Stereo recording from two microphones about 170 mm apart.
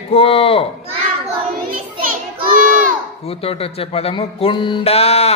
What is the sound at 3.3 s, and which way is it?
Music, 35° left (ahead or behind).